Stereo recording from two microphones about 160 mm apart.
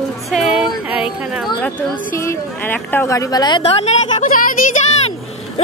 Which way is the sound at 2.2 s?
10° left (ahead or behind).